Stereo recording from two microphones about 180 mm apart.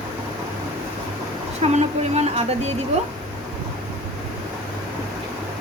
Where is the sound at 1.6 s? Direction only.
40° right (ahead or behind).